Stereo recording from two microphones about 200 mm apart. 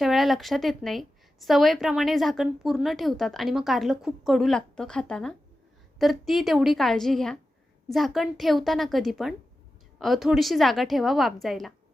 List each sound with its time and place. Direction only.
0.0 s a woman's voice: centre (ahead or behind)